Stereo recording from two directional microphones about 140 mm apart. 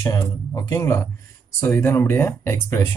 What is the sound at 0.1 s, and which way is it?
Speech, 25° left (ahead or behind).